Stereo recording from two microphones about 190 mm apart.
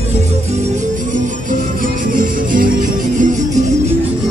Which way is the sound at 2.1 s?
45° right (ahead or behind).